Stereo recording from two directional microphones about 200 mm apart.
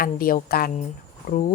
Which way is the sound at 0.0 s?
45° left (ahead or behind).